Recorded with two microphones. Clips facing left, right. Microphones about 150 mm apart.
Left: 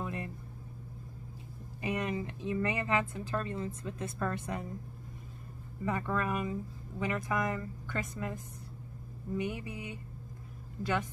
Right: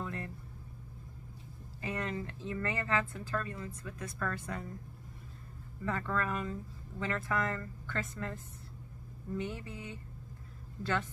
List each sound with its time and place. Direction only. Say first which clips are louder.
0.0 s vehicle: left 2 dB; 15° left (ahead or behind)
1.8 s speech: left 3 dB; 15° left (ahead or behind)
5.9 s speech: left 2 dB; 15° left (ahead or behind)
9.4 s speech: left 4 dB; 15° left (ahead or behind)